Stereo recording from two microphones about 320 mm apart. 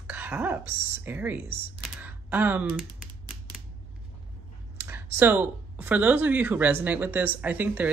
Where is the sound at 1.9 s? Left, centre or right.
Centre.